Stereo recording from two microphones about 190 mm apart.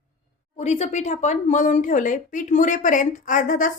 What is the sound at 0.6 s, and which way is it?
A woman's voice, 35° left (ahead or behind).